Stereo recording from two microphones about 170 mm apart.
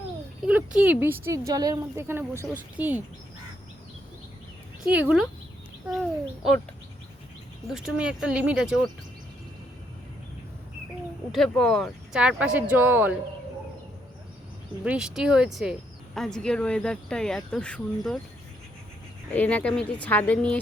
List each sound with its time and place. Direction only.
0.4 s speech: 5° right (ahead or behind)
4.9 s speech: 5° right (ahead or behind)
7.7 s speech: 5° right (ahead or behind)
11.3 s speech: 5° left (ahead or behind)
14.8 s speech: 5° right (ahead or behind)
19.3 s speech: 10° left (ahead or behind)